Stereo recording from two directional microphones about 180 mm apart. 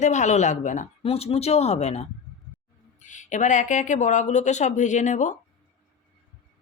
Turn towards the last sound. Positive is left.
turn(degrees=45)  # may be behind; listen again after turning